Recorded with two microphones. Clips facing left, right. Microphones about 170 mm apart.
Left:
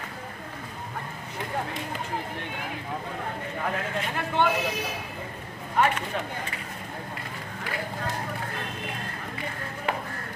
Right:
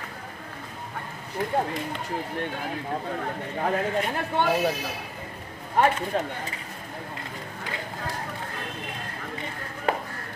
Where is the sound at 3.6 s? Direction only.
40° right (ahead or behind).